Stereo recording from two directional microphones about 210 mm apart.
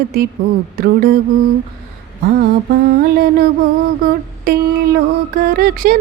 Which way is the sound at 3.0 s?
45° right (ahead or behind).